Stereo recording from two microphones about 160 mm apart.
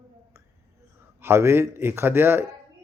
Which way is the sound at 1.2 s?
15° right (ahead or behind).